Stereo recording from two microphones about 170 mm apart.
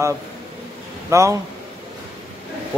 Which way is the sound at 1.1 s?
15° right (ahead or behind).